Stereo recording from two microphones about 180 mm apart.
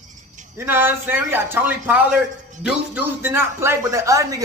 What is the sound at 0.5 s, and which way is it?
Speech, 10° right (ahead or behind).